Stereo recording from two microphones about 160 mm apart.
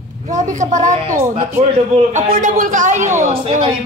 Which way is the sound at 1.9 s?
50° right (ahead or behind).